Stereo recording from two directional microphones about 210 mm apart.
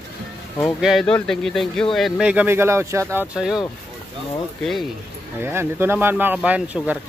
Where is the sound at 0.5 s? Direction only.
Centre (ahead or behind).